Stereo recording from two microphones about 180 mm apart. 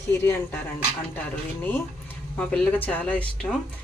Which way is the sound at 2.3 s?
5° left (ahead or behind).